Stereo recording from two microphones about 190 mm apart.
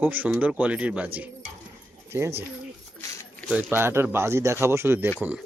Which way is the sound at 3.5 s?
10° right (ahead or behind).